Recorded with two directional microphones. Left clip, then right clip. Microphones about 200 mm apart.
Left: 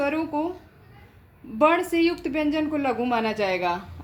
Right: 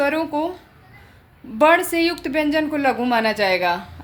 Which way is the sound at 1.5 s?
15° right (ahead or behind).